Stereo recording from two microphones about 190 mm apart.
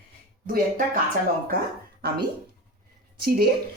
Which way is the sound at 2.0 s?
55° right (ahead or behind).